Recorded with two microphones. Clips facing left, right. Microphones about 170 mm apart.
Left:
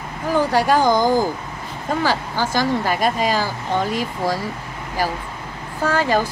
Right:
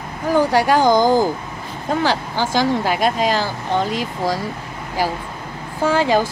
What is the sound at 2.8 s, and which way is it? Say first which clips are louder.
Speech: right 2 dB; centre (ahead or behind).